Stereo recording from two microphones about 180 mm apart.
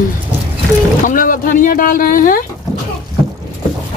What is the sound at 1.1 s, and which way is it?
Speech, 50° left (ahead or behind).